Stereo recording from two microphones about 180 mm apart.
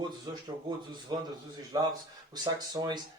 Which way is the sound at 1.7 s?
20° right (ahead or behind).